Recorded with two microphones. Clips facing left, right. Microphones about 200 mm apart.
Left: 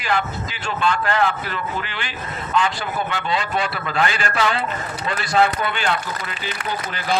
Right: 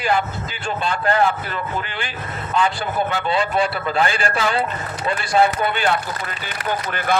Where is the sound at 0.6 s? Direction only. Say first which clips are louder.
Even; 35° right (ahead or behind).